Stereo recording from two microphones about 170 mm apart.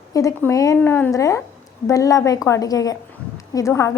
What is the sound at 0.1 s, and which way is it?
A woman's voice, 20° left (ahead or behind).